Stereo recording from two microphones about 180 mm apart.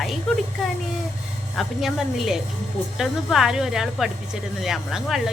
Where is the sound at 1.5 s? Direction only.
Centre (ahead or behind).